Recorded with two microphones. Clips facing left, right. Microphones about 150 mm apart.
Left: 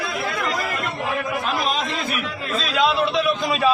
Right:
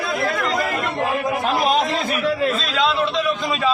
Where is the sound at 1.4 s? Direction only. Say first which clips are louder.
Right 5 dB; 45° right (ahead or behind).